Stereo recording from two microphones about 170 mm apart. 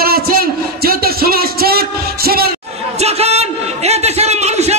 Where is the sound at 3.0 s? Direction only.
40° right (ahead or behind).